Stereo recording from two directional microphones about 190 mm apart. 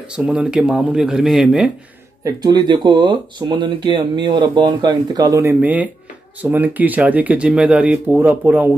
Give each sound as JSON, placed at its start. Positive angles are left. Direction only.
{"t": 0.1, "sound": "speech", "side_deg": -5}
{"t": 2.2, "sound": "speech", "side_deg": -20}